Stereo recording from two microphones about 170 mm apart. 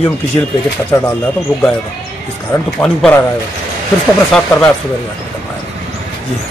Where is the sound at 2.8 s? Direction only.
5° left (ahead or behind).